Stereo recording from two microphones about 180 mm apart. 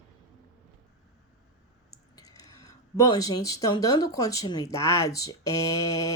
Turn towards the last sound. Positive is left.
turn(degrees=20)  # may be behind; listen again after turning